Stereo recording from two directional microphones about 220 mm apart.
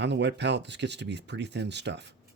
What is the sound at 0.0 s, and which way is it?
Speech, 50° right (ahead or behind).